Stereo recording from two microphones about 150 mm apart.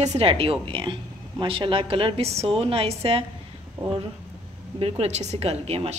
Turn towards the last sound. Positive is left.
turn(degrees=-45)  # may be behind; listen again after turning